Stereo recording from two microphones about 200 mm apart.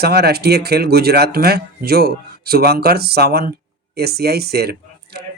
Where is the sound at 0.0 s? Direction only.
55° right (ahead or behind).